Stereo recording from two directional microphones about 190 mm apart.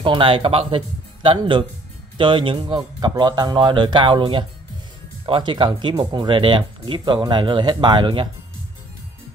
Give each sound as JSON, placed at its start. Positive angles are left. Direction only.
{"t": 0.0, "sound": "speech", "side_deg": -25}